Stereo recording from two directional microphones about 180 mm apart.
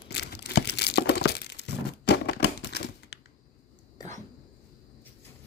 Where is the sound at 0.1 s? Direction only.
70° left (ahead or behind).